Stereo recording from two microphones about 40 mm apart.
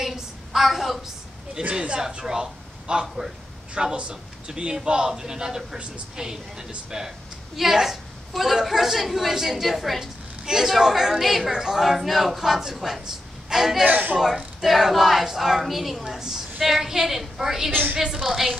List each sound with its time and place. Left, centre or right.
0.0 s a sound: centre
1.6 s a man's voice: right
2.0 s a man's voice: centre
13.8 s speech: right
14.1 s speech: centre
16.0 s a woman's voice: centre